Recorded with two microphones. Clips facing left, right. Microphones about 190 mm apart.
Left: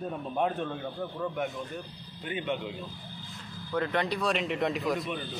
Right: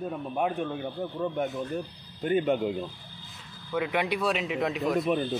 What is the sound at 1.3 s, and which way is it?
A man's voice, 40° right (ahead or behind).